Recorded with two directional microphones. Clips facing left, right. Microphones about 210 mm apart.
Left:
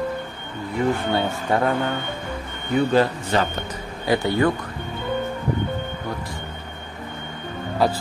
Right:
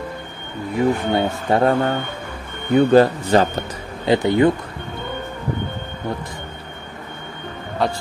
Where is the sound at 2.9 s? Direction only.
40° right (ahead or behind).